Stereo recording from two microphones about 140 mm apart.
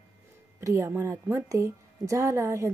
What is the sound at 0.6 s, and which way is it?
A woman's voice, 20° right (ahead or behind).